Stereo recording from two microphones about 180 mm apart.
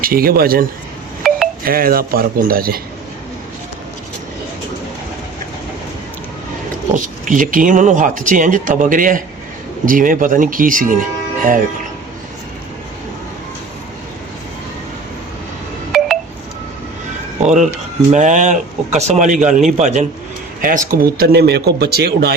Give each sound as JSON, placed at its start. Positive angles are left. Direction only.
{"t": 0.0, "sound": "speech", "side_deg": -55}
{"t": 1.2, "sound": "wind chime", "side_deg": 0}
{"t": 1.6, "sound": "speech", "side_deg": -55}
{"t": 6.9, "sound": "speech", "side_deg": -45}
{"t": 15.9, "sound": "telephone dialing", "side_deg": 0}
{"t": 17.4, "sound": "speech", "side_deg": -40}
{"t": 20.6, "sound": "speech", "side_deg": -50}